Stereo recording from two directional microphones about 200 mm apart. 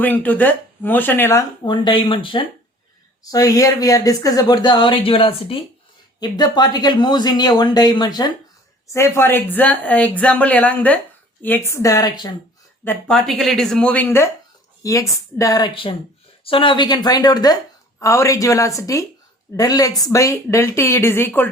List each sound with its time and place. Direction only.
0.0 s speech: 10° left (ahead or behind)
1.6 s speech: 25° left (ahead or behind)
12.8 s speech: 5° left (ahead or behind)